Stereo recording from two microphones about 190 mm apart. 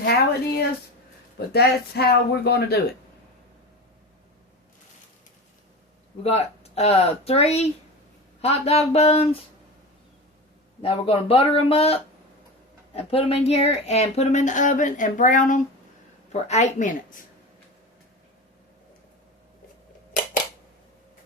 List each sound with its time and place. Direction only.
0.0 s a sound: 55° left (ahead or behind)
1.5 s speech: 55° left (ahead or behind)
6.2 s speech: 35° left (ahead or behind)
10.8 s speech: 30° left (ahead or behind)